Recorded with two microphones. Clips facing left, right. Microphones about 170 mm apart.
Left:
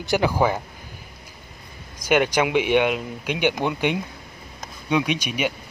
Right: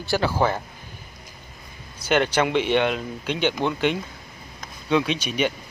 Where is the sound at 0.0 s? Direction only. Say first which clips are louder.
Left 2 dB; 15° left (ahead or behind).